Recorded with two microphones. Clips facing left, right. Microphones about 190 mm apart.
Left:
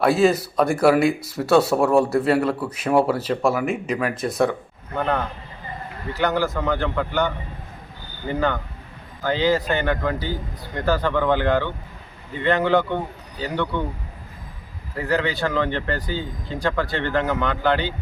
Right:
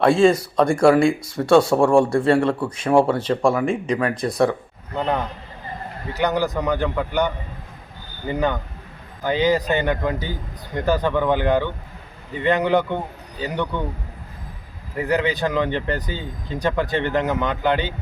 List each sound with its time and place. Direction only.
0.0 s speech: 5° left (ahead or behind)
4.9 s speech: 15° right (ahead or behind)
14.9 s speech: 15° right (ahead or behind)